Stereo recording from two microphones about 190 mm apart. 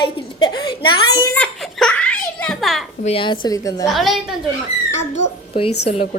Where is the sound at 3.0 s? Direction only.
30° left (ahead or behind).